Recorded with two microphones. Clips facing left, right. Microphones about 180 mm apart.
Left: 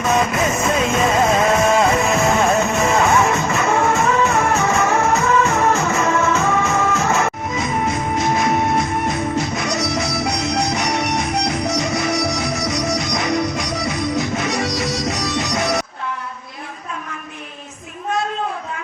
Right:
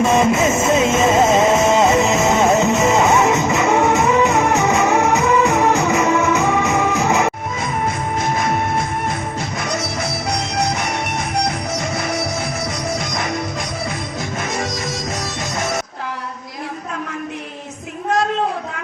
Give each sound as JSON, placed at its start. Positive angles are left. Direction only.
{"t": 0.0, "sound": "music", "side_deg": -25}
{"t": 9.8, "sound": "music", "side_deg": -55}